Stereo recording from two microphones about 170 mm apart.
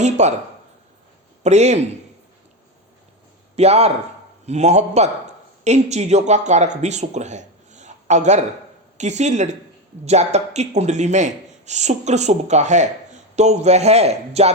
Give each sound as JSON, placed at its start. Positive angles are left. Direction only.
{"t": 0.0, "sound": "speech", "side_deg": -40}
{"t": 1.5, "sound": "speech", "side_deg": -40}
{"t": 3.5, "sound": "a man's voice", "side_deg": -40}